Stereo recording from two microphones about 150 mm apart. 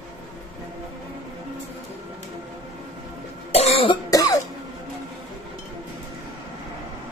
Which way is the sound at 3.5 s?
40° left (ahead or behind).